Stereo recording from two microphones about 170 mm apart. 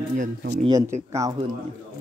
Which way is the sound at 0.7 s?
20° right (ahead or behind).